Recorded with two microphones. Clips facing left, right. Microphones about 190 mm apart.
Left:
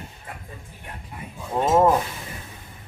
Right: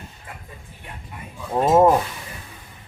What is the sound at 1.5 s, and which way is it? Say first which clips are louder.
Speech: right 3 dB; 10° right (ahead or behind).